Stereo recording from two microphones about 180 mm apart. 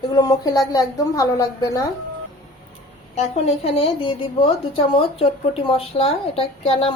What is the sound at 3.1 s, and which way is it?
A woman's voice, 35° left (ahead or behind).